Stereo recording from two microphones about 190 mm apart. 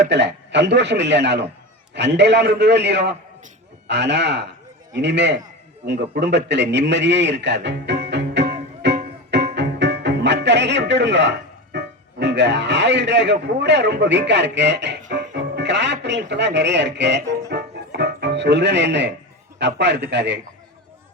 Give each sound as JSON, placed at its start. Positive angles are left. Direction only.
{"t": 0.0, "sound": "a man's voice", "side_deg": -65}
{"t": 8.8, "sound": "music", "side_deg": -65}
{"t": 15.3, "sound": "speech", "side_deg": -65}
{"t": 17.5, "sound": "music", "side_deg": -60}
{"t": 19.5, "sound": "speech", "side_deg": -65}